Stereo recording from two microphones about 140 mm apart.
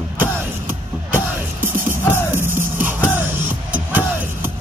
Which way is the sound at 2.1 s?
15° right (ahead or behind).